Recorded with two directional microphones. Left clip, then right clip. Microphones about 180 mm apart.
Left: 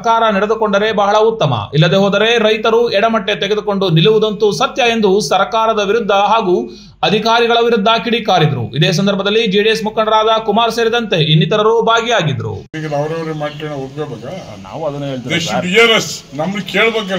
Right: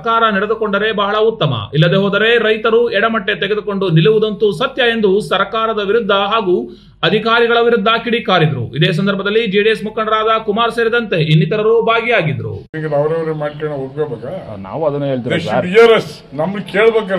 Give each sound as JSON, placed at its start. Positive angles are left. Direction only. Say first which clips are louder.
{"t": 0.0, "sound": "speech", "louder": "left 1 dB", "side_deg": 0}
{"t": 14.8, "sound": "a man's voice", "louder": "right 4 dB", "side_deg": -40}
{"t": 15.6, "sound": "a man's voice", "louder": "right 2 dB", "side_deg": -5}